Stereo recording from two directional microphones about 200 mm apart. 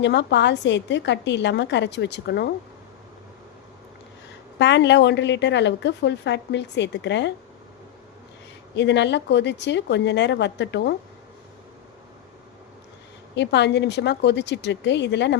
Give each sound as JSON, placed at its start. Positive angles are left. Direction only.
{"t": 0.0, "sound": "a woman's voice", "side_deg": 60}
{"t": 4.5, "sound": "a woman's voice", "side_deg": 60}
{"t": 8.7, "sound": "a woman's voice", "side_deg": 60}
{"t": 13.3, "sound": "a woman's voice", "side_deg": 60}